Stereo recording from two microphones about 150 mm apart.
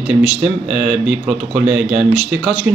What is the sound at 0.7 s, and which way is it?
Speech, 5° right (ahead or behind).